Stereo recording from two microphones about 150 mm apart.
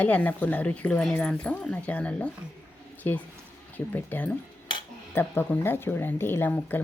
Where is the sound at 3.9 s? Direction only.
10° left (ahead or behind).